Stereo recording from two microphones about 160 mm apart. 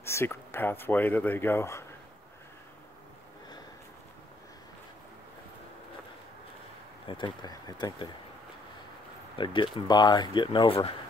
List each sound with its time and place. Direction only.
0.0 s speech: 15° left (ahead or behind)
7.1 s speech: 30° left (ahead or behind)
9.4 s speech: 30° left (ahead or behind)